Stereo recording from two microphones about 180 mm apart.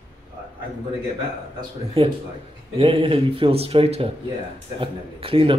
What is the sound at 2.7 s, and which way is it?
Speech, 30° right (ahead or behind).